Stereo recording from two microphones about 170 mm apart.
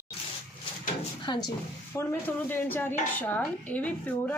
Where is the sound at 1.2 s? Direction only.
25° left (ahead or behind).